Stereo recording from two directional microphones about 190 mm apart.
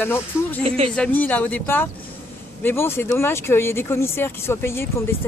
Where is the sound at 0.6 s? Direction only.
30° right (ahead or behind).